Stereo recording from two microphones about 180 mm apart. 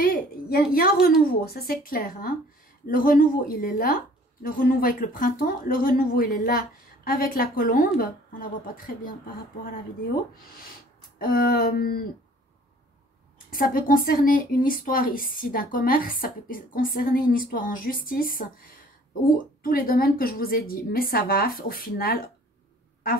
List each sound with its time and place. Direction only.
0.0 s a sound: 55° left (ahead or behind)
1.4 s a woman's voice: 60° left (ahead or behind)
11.0 s speech: 55° left (ahead or behind)
13.5 s a woman's voice: 50° left (ahead or behind)